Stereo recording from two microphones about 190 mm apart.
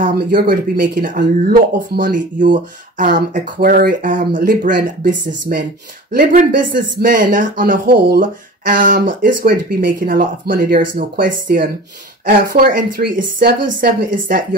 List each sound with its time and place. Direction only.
0.0 s speech: 50° right (ahead or behind)